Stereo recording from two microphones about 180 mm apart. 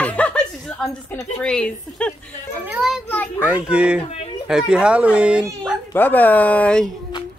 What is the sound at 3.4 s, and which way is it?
Speech, 5° right (ahead or behind).